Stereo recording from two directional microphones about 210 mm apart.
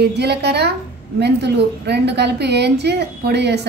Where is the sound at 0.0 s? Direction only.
50° right (ahead or behind).